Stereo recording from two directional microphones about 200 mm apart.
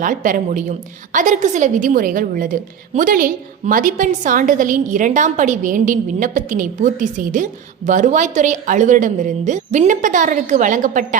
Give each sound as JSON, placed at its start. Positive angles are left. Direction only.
{"t": 0.0, "sound": "a woman's voice", "side_deg": -40}